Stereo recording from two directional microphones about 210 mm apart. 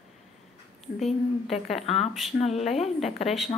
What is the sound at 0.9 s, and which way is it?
A woman's voice, centre (ahead or behind).